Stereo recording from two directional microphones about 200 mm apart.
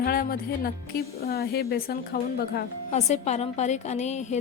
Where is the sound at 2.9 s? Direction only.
35° left (ahead or behind).